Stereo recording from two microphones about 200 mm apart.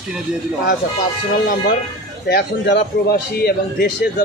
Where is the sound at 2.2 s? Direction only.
55° left (ahead or behind).